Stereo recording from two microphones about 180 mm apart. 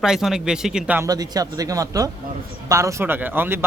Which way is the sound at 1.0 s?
20° right (ahead or behind).